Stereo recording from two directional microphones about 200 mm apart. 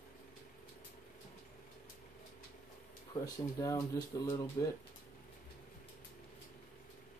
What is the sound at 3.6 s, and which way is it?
Speech, 15° left (ahead or behind).